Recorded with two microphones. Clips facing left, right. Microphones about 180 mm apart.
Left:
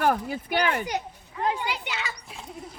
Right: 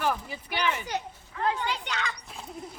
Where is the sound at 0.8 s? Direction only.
15° left (ahead or behind).